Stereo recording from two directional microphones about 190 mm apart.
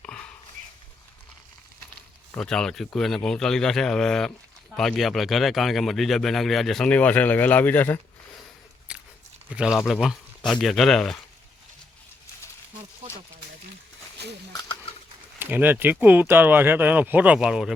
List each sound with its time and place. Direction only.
2.3 s speech: 5° left (ahead or behind)
8.9 s biting: 5° right (ahead or behind)
9.6 s speech: centre (ahead or behind)
14.2 s a sound: 60° right (ahead or behind)
14.5 s a sound: 25° left (ahead or behind)
15.4 s speech: 10° right (ahead or behind)